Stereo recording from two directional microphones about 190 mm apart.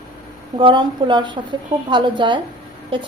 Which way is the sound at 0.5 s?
25° right (ahead or behind).